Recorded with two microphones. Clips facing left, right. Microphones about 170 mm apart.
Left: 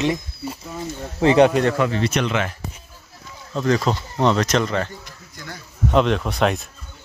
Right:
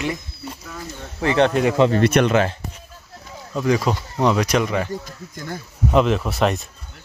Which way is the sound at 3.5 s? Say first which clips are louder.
Even; 10° right (ahead or behind).